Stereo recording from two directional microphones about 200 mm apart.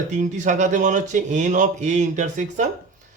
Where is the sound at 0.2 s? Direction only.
40° right (ahead or behind).